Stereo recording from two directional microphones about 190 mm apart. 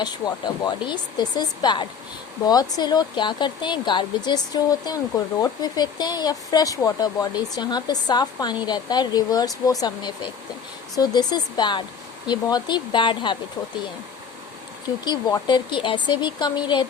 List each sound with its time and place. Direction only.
0.0 s speech: 20° left (ahead or behind)
15.0 s speech: 20° left (ahead or behind)